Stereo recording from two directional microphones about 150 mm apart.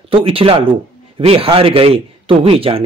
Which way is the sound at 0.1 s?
40° right (ahead or behind).